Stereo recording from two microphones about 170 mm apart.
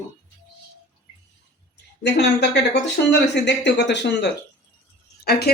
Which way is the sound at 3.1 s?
90° left.